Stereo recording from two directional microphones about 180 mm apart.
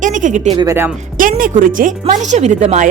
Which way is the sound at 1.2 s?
50° right (ahead or behind).